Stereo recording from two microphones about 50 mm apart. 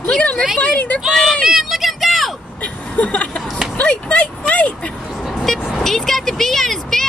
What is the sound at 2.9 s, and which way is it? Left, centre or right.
Speech, left.